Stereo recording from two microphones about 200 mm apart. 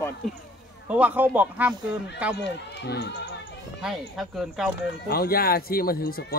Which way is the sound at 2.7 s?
60° left (ahead or behind).